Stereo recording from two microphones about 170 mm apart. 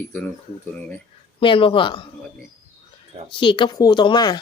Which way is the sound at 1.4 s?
30° left (ahead or behind).